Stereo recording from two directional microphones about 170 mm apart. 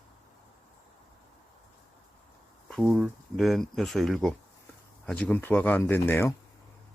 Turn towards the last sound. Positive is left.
turn(degrees=15)  # may be behind; listen again after turning